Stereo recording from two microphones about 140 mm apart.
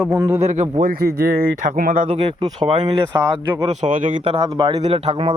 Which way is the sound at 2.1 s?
40° right (ahead or behind).